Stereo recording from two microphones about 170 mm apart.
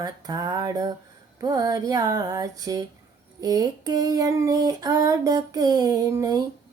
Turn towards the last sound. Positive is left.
turn(degrees=-20)  # may be behind; listen again after turning